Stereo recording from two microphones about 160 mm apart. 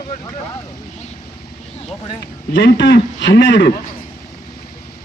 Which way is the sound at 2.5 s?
90° left.